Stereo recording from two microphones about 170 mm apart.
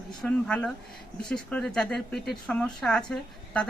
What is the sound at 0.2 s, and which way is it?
Speech, 5° left (ahead or behind).